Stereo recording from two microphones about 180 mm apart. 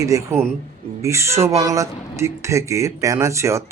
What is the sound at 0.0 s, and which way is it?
Speech, 15° right (ahead or behind).